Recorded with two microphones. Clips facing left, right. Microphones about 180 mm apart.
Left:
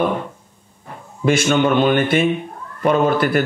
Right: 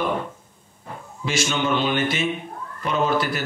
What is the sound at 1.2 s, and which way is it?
Speech, 55° left (ahead or behind).